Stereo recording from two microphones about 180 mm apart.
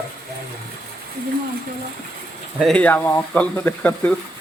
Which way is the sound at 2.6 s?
5° left (ahead or behind).